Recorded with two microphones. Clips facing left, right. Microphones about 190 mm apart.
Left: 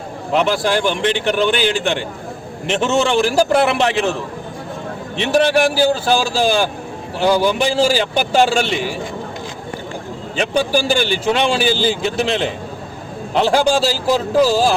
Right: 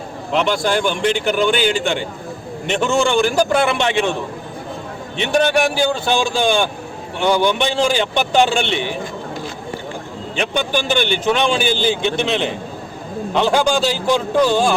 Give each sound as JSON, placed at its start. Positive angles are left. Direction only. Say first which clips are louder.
{"t": 0.3, "sound": "a man's voice", "louder": "left 1 dB", "side_deg": 5}
{"t": 5.1, "sound": "a man's voice", "louder": "left 2 dB", "side_deg": 0}
{"t": 7.2, "sound": "a man's voice", "louder": "left 1 dB", "side_deg": 30}
{"t": 7.4, "sound": "a man's voice", "louder": "left 2 dB", "side_deg": 5}
{"t": 10.5, "sound": "a man's voice", "louder": "left 4 dB", "side_deg": 35}
{"t": 10.9, "sound": "a man's voice", "louder": "even", "side_deg": 5}
{"t": 13.3, "sound": "a man's voice", "louder": "left 1 dB", "side_deg": 30}
{"t": 13.8, "sound": "a man's voice", "louder": "left 1 dB", "side_deg": 5}